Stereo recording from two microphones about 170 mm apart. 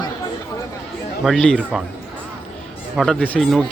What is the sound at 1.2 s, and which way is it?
Speech, 5° left (ahead or behind).